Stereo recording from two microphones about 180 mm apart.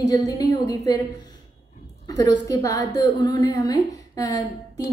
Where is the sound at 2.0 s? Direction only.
20° left (ahead or behind).